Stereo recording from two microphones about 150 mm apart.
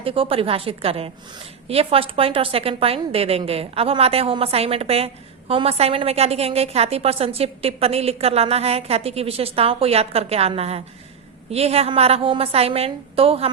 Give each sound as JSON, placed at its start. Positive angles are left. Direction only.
{"t": 0.0, "sound": "a woman's voice", "side_deg": -35}